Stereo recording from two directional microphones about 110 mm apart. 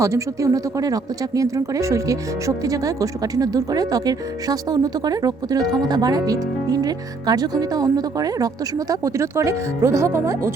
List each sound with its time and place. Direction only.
0.0 s speech: 30° right (ahead or behind)